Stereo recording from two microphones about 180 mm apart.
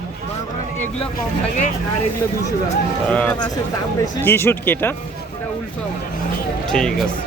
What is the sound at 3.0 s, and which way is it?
Speech, 5° left (ahead or behind).